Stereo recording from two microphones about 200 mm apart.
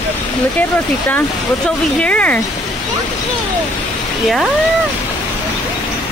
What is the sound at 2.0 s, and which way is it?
Speech, 5° left (ahead or behind).